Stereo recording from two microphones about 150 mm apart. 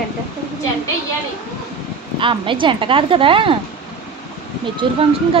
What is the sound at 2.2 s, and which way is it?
Speech, 35° right (ahead or behind).